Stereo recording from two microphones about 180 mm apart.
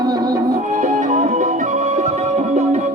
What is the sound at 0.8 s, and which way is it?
Music, 45° right (ahead or behind).